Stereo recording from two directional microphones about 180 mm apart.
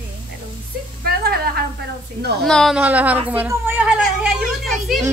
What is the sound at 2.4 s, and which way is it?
Speech, centre (ahead or behind).